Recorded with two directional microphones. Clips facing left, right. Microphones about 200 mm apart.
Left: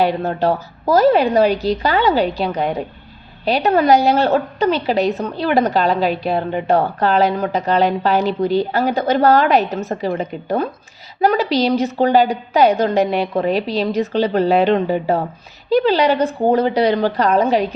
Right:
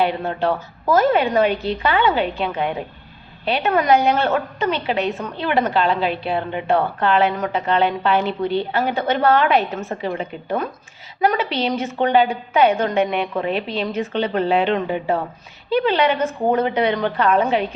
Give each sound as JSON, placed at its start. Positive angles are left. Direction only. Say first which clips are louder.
{"t": 0.0, "sound": "a woman's voice", "louder": "left 3 dB", "side_deg": 40}